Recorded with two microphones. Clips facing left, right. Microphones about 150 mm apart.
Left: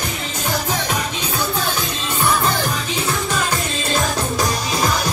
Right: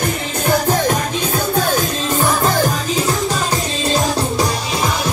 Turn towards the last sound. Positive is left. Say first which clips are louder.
# right 2 dB
turn(degrees=-25)  # may be behind; listen again after turning